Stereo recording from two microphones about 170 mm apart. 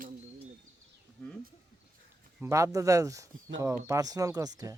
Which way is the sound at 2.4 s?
15° right (ahead or behind).